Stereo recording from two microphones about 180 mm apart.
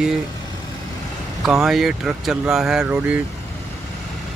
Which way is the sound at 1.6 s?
Centre (ahead or behind).